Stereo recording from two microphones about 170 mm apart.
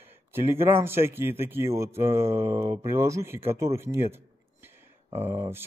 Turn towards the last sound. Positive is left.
turn(degrees=-35)  # may be behind; listen again after turning